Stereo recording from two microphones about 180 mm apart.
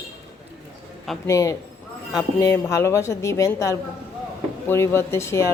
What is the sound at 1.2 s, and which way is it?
A woman's voice, 20° left (ahead or behind).